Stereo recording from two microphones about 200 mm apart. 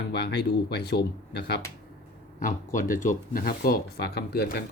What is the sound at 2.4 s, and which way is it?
Speech, 45° left (ahead or behind).